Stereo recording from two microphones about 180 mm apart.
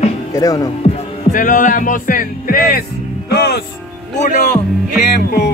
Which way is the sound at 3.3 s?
65° left (ahead or behind).